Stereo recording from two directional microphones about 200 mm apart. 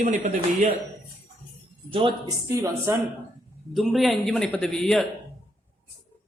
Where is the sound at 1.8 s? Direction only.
25° right (ahead or behind).